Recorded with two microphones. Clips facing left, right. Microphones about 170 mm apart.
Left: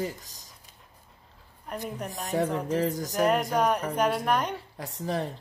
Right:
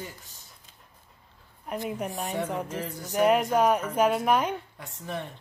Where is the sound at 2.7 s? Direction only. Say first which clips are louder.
Left 7 dB; 40° left (ahead or behind).